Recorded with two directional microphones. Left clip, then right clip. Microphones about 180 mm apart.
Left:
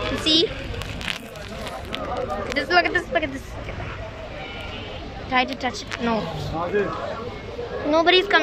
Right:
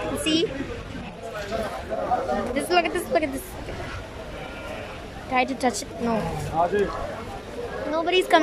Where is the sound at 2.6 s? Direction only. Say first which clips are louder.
Left 5 dB; 20° right (ahead or behind).